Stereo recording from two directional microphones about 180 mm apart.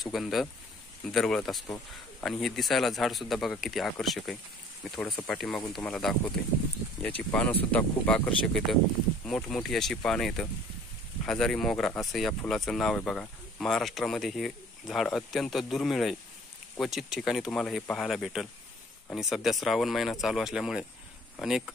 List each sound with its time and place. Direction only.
0.0 s speech: centre (ahead or behind)